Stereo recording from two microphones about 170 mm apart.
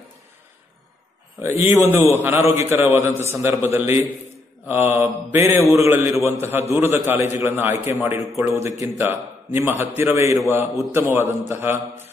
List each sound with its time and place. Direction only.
1.4 s a man's voice: 15° right (ahead or behind)